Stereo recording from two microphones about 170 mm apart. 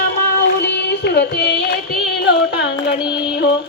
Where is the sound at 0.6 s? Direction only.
90° left.